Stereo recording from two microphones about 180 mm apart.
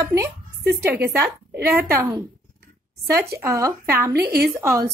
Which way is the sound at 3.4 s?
15° right (ahead or behind).